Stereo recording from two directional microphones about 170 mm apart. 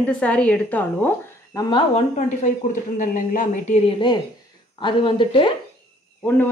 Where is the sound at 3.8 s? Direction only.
25° left (ahead or behind).